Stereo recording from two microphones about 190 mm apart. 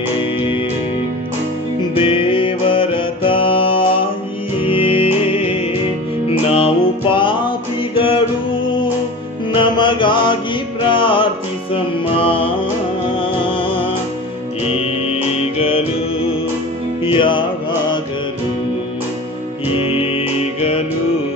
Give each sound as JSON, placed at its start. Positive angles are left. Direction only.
{"t": 2.0, "sound": "music", "side_deg": 30}
{"t": 9.5, "sound": "mantra", "side_deg": 25}
{"t": 10.9, "sound": "music", "side_deg": 25}
{"t": 15.5, "sound": "music", "side_deg": 30}
{"t": 19.9, "sound": "music", "side_deg": 30}